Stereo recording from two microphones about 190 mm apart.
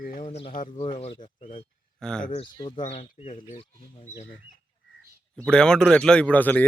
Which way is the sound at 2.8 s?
35° left (ahead or behind).